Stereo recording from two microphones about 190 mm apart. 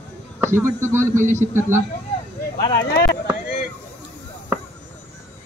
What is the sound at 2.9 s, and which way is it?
Speech, 55° left (ahead or behind).